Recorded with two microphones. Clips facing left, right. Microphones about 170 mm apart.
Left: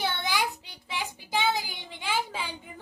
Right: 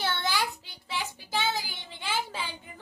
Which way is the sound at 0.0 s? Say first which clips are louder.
Left 1 dB; 15° left (ahead or behind).